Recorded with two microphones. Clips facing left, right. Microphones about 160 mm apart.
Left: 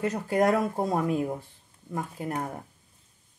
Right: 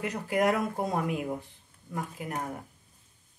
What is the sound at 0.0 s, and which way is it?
Speech, 35° left (ahead or behind).